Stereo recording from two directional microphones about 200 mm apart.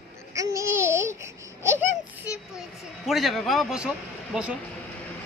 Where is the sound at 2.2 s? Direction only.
Centre (ahead or behind).